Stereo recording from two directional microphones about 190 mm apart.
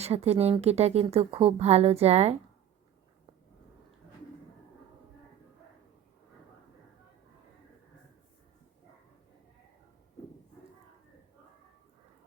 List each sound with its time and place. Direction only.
0.0 s speech: 35° right (ahead or behind)